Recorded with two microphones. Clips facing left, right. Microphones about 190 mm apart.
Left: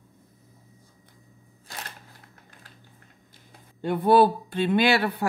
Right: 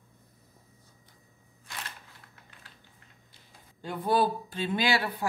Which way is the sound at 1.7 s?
40° left (ahead or behind).